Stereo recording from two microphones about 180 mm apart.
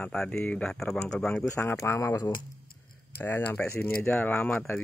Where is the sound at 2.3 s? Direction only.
55° left (ahead or behind).